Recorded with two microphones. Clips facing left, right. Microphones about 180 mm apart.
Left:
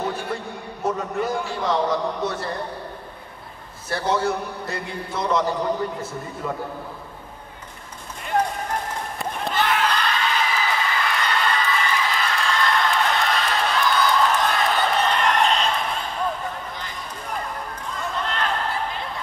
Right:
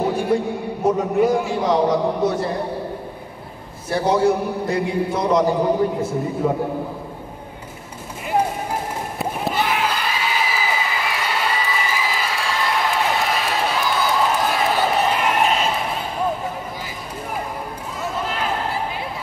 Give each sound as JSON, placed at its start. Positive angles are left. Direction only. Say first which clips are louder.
{"t": 0.0, "sound": "a sound", "louder": "right 8 dB", "side_deg": -10}
{"t": 0.8, "sound": "a man's voice", "louder": "right 7 dB", "side_deg": -10}
{"t": 1.9, "sound": "a man's voice", "louder": "right 5 dB", "side_deg": -25}
{"t": 4.6, "sound": "a man's voice", "louder": "right 10 dB", "side_deg": -10}
{"t": 5.4, "sound": "a man's voice", "louder": "right 6 dB", "side_deg": -25}
{"t": 8.3, "sound": "run", "louder": "right 2 dB", "side_deg": -10}
{"t": 17.9, "sound": "a sound", "louder": "right 2 dB", "side_deg": -5}